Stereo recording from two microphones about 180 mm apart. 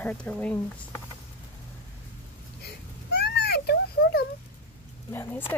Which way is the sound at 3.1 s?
65° left (ahead or behind).